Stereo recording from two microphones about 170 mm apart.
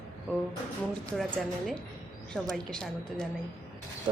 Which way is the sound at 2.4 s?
5° left (ahead or behind).